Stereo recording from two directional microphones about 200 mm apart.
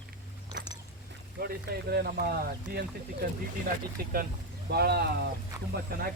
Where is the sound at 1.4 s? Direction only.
45° right (ahead or behind).